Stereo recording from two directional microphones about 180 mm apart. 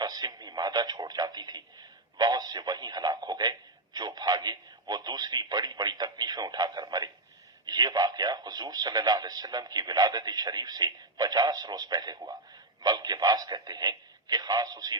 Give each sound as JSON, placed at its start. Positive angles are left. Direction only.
{"t": 0.0, "sound": "speech", "side_deg": -25}